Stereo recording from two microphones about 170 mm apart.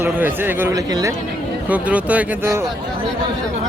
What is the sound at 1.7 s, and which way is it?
Speech, 10° right (ahead or behind).